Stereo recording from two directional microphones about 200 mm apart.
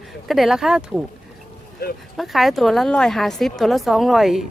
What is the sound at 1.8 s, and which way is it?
Speech, 50° left (ahead or behind).